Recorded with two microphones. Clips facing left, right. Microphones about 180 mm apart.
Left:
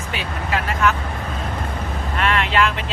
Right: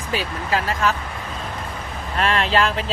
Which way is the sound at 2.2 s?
35° right (ahead or behind).